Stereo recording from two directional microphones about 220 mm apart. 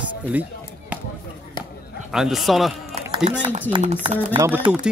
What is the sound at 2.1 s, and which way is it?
Speech, centre (ahead or behind).